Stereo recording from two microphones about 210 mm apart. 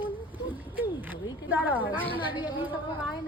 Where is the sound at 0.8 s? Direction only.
10° right (ahead or behind).